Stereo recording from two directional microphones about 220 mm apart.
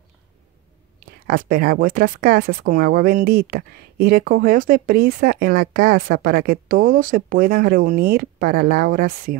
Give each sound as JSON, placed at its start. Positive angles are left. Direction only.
{"t": 1.2, "sound": "speech", "side_deg": -40}